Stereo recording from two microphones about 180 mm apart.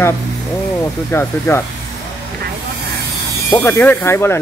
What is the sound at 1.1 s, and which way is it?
Speech, 15° left (ahead or behind).